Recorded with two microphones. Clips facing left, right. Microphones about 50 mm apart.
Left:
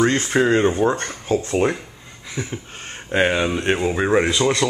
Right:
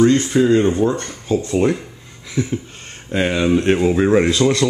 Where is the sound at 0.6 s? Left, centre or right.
Left.